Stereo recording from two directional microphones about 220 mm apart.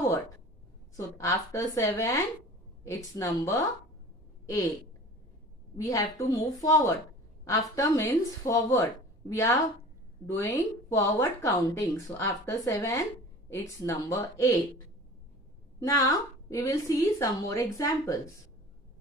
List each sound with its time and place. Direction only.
0.9 s a woman's voice: 15° left (ahead or behind)
5.8 s a woman's voice: 15° left (ahead or behind)
16.1 s a woman's voice: 15° left (ahead or behind)